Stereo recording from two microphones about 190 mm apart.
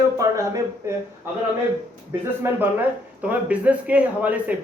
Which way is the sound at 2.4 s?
10° right (ahead or behind).